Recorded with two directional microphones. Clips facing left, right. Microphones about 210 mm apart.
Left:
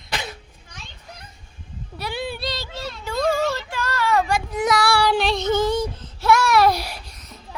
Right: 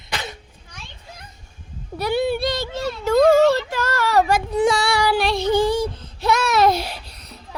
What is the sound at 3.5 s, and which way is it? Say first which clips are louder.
Child singing: right 4 dB; 40° right (ahead or behind).